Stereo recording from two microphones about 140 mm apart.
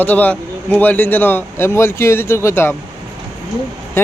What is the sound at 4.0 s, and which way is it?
Speech, 20° left (ahead or behind).